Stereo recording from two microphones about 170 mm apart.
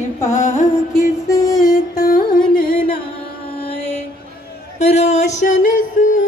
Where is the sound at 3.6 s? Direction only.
35° left (ahead or behind).